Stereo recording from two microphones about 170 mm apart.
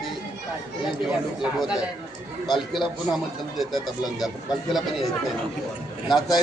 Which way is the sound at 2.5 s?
Centre (ahead or behind).